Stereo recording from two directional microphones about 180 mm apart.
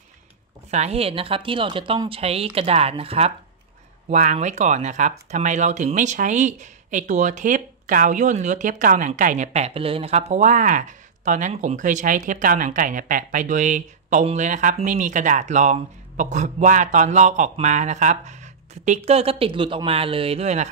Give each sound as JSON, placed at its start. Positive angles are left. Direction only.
{"t": 0.7, "sound": "speech", "side_deg": -40}